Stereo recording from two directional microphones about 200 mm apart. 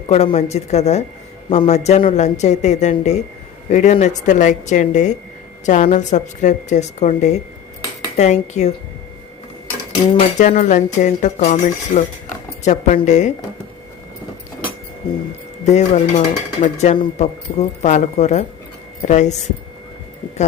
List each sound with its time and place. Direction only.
0.1 s speech: 35° left (ahead or behind)
10.2 s speech: 35° left (ahead or behind)
15.6 s speech: 35° left (ahead or behind)